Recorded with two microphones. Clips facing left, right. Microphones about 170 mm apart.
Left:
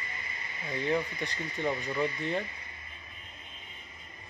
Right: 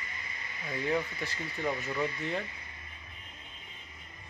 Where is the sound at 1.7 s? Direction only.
10° left (ahead or behind).